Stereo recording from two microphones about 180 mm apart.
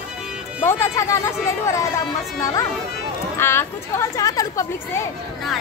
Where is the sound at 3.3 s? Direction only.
15° left (ahead or behind).